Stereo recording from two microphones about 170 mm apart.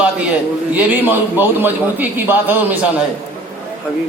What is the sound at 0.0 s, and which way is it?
A man's voice, 5° right (ahead or behind).